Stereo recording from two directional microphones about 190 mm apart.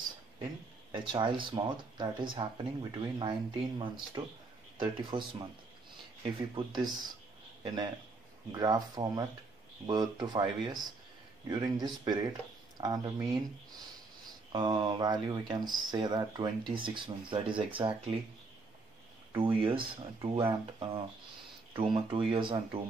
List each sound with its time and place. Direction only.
0.9 s speech: 25° right (ahead or behind)
14.5 s speech: 25° right (ahead or behind)
19.3 s speech: 25° right (ahead or behind)